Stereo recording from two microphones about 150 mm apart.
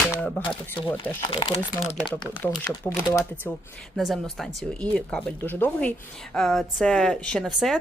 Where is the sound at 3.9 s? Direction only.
Centre (ahead or behind).